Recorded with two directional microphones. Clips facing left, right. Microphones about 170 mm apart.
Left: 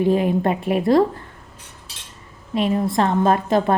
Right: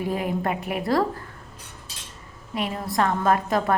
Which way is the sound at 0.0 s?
25° left (ahead or behind).